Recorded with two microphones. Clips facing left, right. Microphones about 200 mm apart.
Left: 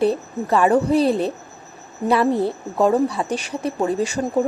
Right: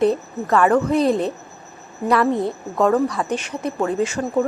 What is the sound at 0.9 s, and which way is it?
Speech, 30° left (ahead or behind).